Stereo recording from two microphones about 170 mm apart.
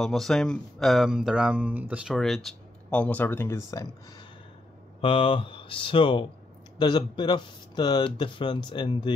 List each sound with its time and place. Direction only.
0.0 s speech: centre (ahead or behind); by 3.9 s 20° left (ahead or behind)
5.0 s speech: 30° left (ahead or behind)